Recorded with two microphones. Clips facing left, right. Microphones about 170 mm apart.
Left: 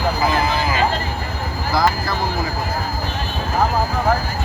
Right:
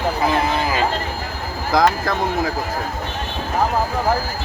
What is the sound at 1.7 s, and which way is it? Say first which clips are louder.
Speech: right 3 dB; 85° right.